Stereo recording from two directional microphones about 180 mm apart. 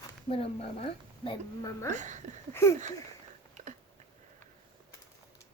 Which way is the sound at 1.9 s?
40° right (ahead or behind).